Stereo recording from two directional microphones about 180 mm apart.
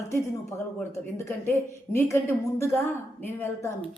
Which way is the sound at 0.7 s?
10° left (ahead or behind).